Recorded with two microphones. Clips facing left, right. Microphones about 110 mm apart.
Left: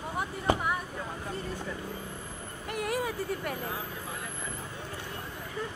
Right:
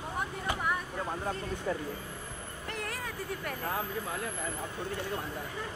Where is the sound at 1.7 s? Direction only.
50° right (ahead or behind).